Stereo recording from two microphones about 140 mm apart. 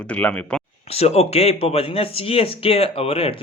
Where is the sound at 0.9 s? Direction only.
50° left (ahead or behind).